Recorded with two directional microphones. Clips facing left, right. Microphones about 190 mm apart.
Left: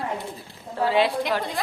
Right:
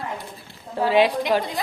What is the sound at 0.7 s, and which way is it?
Speech, 15° right (ahead or behind).